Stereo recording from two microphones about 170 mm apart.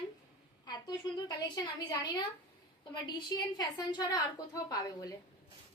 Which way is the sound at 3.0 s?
25° left (ahead or behind).